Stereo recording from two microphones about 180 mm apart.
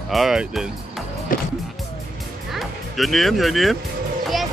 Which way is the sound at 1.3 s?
50° left (ahead or behind).